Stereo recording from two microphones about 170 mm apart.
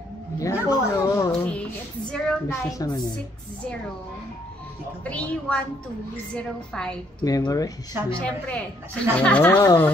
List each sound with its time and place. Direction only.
0.4 s a sound: 20° left (ahead or behind)
1.5 s music: 5° left (ahead or behind)
2.5 s a woman's voice: 20° left (ahead or behind)
5.0 s a woman's voice: 5° left (ahead or behind)
7.2 s a woman's voice: 20° left (ahead or behind)
8.1 s a woman's voice: 5° left (ahead or behind)